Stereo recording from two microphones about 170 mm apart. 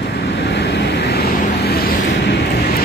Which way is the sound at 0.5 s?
90° left.